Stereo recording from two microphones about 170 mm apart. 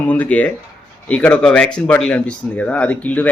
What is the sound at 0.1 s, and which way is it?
Speech, 10° left (ahead or behind).